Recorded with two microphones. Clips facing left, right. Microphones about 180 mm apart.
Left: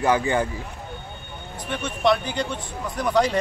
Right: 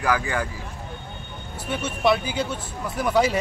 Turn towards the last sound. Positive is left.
turn(degrees=-5)  # may be behind; listen again after turning